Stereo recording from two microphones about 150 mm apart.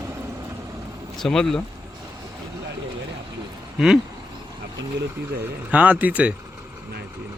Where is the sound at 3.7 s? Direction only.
5° right (ahead or behind).